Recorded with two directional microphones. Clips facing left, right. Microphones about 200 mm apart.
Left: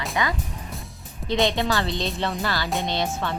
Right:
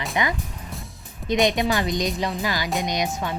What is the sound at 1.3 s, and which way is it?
A woman's voice, 15° right (ahead or behind).